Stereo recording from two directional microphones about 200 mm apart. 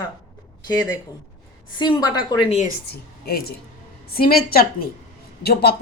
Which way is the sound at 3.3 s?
50° left (ahead or behind).